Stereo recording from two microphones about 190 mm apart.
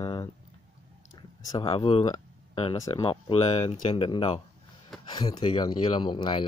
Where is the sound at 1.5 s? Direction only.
25° left (ahead or behind).